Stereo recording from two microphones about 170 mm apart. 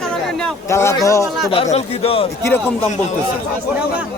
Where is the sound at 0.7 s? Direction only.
15° left (ahead or behind).